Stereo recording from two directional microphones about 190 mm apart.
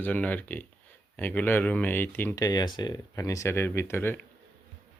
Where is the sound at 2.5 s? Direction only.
25° left (ahead or behind).